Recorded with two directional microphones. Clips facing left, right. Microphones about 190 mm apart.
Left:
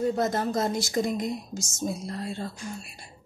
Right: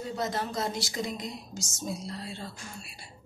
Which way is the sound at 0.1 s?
50° left (ahead or behind).